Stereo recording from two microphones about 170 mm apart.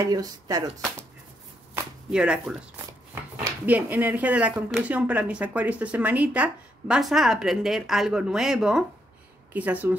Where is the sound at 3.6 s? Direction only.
10° right (ahead or behind).